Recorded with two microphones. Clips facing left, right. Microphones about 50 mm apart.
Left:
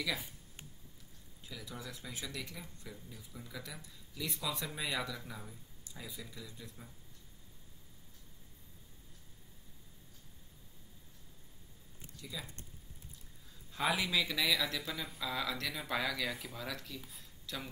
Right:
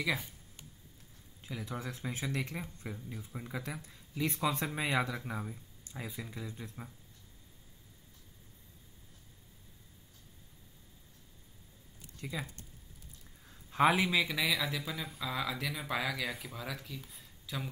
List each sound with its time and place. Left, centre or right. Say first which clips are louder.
1.4 s speech: right 6 dB; right
12.2 s speech: right 6 dB; right
13.5 s a sound: right 7 dB; right
14.0 s speech: right 2 dB; centre